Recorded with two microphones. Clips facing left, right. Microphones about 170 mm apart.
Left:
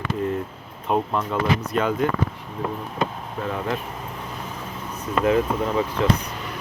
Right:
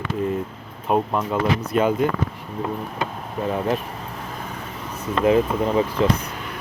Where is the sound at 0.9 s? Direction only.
10° right (ahead or behind).